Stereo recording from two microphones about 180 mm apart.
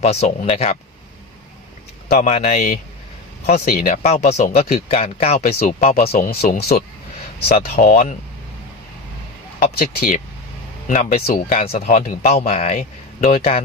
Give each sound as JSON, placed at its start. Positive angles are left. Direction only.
{"t": 0.0, "sound": "speech", "side_deg": 35}
{"t": 2.1, "sound": "speech", "side_deg": 40}
{"t": 5.4, "sound": "speech", "side_deg": 50}
{"t": 5.8, "sound": "speech", "side_deg": 35}
{"t": 6.1, "sound": "speech", "side_deg": 50}
{"t": 9.8, "sound": "speech", "side_deg": 55}